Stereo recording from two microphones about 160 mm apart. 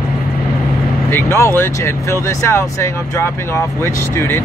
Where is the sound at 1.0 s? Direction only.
15° left (ahead or behind).